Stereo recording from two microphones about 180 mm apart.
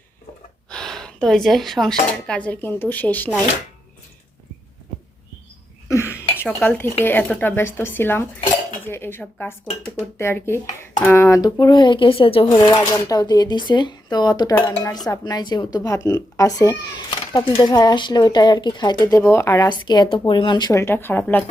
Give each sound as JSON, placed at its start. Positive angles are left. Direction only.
{"t": 0.7, "sound": "speech", "side_deg": 5}
{"t": 5.9, "sound": "a sound", "side_deg": 15}
{"t": 6.4, "sound": "speech", "side_deg": 10}